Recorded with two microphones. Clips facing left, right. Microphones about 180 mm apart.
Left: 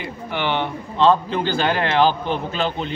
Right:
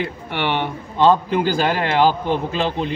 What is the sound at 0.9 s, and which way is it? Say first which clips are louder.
A man's voice: right 1 dB; 10° right (ahead or behind).